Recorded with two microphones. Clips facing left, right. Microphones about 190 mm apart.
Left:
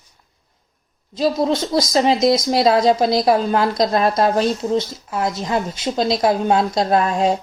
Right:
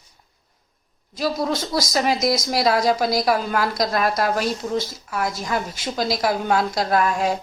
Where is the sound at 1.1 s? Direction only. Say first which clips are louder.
Left 5 dB; 25° left (ahead or behind).